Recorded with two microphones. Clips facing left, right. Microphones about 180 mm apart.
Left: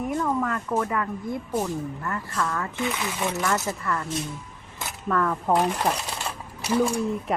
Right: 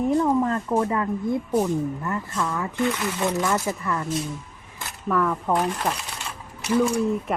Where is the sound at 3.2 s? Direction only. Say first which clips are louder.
Right 2 dB; 15° right (ahead or behind).